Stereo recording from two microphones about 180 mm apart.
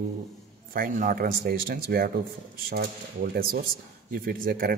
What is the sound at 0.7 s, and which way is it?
Speech, 50° right (ahead or behind).